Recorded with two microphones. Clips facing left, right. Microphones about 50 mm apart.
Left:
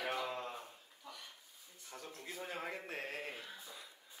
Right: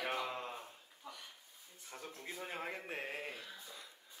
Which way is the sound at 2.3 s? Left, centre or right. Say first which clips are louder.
Left 1 dB; centre.